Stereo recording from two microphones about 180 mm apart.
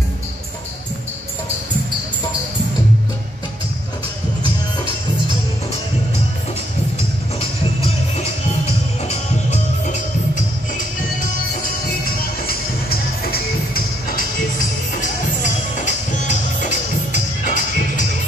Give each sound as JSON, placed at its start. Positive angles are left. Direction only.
{"t": 7.0, "sound": "music", "side_deg": 35}
{"t": 12.4, "sound": "music", "side_deg": 55}
{"t": 15.7, "sound": "music", "side_deg": 40}